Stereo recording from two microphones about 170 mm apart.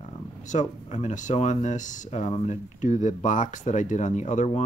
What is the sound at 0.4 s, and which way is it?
Speech, 45° left (ahead or behind).